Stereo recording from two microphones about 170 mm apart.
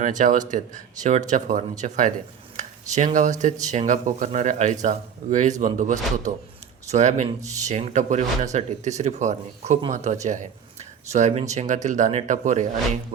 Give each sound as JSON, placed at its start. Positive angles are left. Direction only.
{"t": 0.0, "sound": "speech", "side_deg": -50}